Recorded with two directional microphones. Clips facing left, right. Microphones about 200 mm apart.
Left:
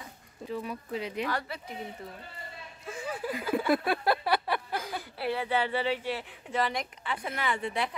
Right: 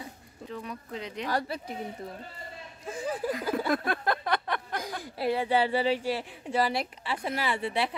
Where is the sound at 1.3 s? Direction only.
35° right (ahead or behind).